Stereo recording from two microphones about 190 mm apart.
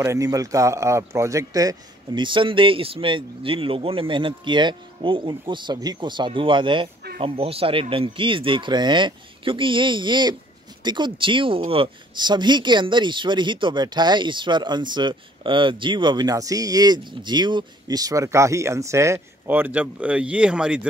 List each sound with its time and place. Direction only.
0.0 s speech: 15° right (ahead or behind)